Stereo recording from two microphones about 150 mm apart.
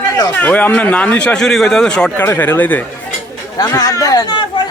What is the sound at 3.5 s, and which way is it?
Speech, 25° left (ahead or behind).